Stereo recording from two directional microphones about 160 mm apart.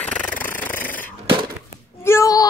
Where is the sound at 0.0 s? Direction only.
10° left (ahead or behind).